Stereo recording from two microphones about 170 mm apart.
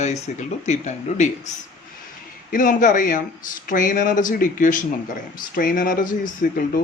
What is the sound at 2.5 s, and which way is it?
Speech, 50° left (ahead or behind).